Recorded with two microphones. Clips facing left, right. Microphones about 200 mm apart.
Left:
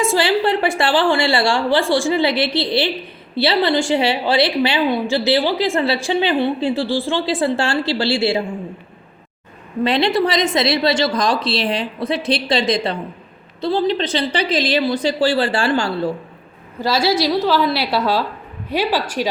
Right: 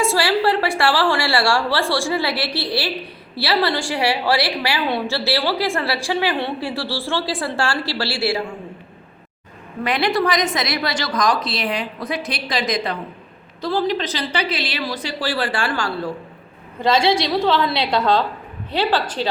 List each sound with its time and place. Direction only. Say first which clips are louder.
0.0 s a woman's voice: left 1 dB; 20° left (ahead or behind)
9.8 s a woman's voice: left 3 dB; 25° left (ahead or behind)
16.8 s a woman's voice: even; 5° left (ahead or behind)